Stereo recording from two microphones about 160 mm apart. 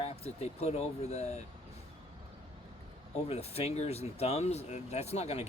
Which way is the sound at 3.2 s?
40° left (ahead or behind).